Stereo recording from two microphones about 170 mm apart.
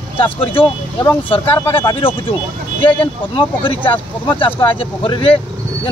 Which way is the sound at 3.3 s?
30° left (ahead or behind).